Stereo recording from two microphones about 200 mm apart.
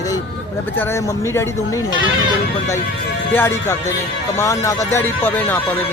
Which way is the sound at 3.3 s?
10° left (ahead or behind).